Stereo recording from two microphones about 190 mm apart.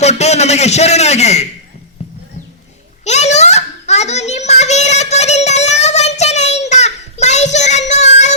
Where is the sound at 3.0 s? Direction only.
35° left (ahead or behind).